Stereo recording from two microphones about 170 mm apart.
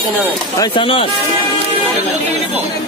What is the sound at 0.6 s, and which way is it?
Speech, 30° left (ahead or behind).